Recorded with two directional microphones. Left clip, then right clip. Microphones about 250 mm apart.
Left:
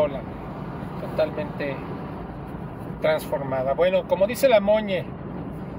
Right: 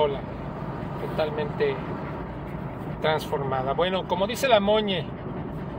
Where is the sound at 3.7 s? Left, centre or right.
Centre.